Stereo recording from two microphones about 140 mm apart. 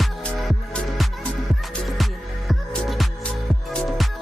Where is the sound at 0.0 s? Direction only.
Centre (ahead or behind).